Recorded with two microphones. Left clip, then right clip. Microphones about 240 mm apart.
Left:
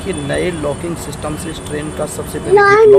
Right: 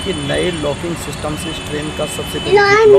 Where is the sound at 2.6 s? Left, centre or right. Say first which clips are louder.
Left 2 dB; left.